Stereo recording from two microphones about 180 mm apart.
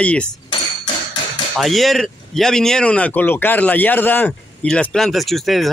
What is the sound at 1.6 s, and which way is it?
Speech, centre (ahead or behind).